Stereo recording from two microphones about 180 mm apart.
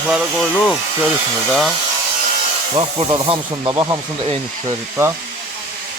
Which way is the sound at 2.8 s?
25° right (ahead or behind).